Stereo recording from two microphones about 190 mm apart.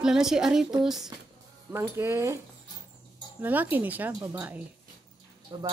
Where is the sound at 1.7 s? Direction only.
15° right (ahead or behind).